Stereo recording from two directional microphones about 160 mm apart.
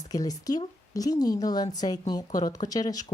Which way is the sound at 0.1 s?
25° left (ahead or behind).